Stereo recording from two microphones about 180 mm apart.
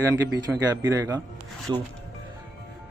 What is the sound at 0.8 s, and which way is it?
Speech, 20° right (ahead or behind).